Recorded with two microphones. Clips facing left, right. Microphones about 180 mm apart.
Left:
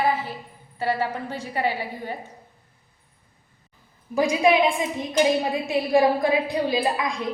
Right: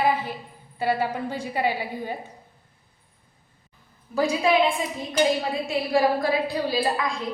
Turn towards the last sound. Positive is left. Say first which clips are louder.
# left 1 dB
turn(degrees=15)  # may be behind; listen again after turning